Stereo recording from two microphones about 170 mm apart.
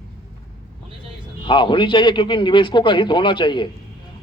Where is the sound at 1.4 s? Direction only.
30° left (ahead or behind).